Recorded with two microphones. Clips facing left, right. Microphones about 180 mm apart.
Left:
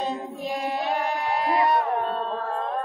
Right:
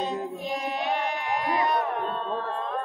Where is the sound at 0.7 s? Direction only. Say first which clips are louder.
Left 2 dB; 35° left (ahead or behind).